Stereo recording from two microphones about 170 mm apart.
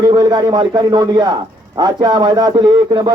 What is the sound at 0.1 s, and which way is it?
Speech, 25° right (ahead or behind).